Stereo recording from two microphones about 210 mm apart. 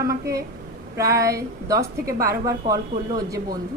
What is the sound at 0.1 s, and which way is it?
A woman's voice, 15° right (ahead or behind).